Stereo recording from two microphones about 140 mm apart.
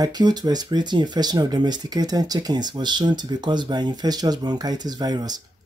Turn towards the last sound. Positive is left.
turn(degrees=-30)  # may be behind; listen again after turning